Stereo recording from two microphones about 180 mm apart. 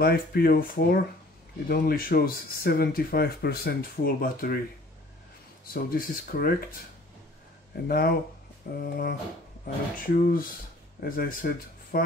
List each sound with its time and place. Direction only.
0.0 s speech: 55° left (ahead or behind)
5.7 s speech: 55° left (ahead or behind)
7.9 s speech: 55° left (ahead or behind)